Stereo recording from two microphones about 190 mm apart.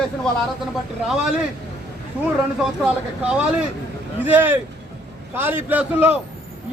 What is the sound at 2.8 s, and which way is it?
A man's voice, 5° right (ahead or behind).